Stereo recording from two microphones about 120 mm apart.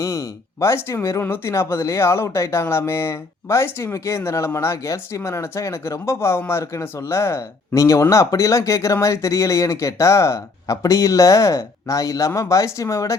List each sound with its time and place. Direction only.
0.0 s speech: 25° left (ahead or behind)